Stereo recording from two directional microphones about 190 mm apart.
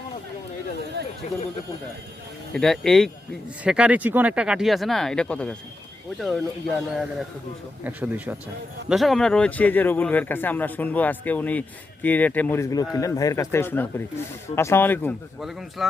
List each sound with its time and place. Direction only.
1.2 s speech: 40° left (ahead or behind)
2.6 s speech: centre (ahead or behind)
7.9 s speech: 10° right (ahead or behind); by 15.1 s 10° left (ahead or behind)
15.4 s speech: centre (ahead or behind)